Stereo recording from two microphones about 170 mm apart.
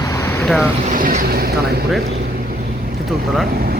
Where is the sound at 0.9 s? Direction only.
55° right (ahead or behind).